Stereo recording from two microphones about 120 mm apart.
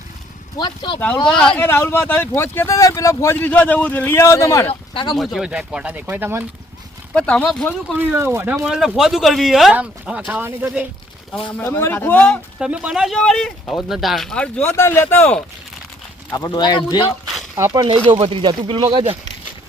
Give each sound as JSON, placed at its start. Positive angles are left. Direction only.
{"t": 0.6, "sound": "speech", "side_deg": 40}
{"t": 0.9, "sound": "speech", "side_deg": 15}
{"t": 4.7, "sound": "speech", "side_deg": 45}
{"t": 5.1, "sound": "speech", "side_deg": 0}
{"t": 7.1, "sound": "speech", "side_deg": 10}
{"t": 7.9, "sound": "speech", "side_deg": -15}
{"t": 8.5, "sound": "speech", "side_deg": -5}
{"t": 11.5, "sound": "speech", "side_deg": 20}
{"t": 12.5, "sound": "speech", "side_deg": -10}
{"t": 16.3, "sound": "speech", "side_deg": 35}
{"t": 17.6, "sound": "speech", "side_deg": -30}
{"t": 17.8, "sound": "speech", "side_deg": -50}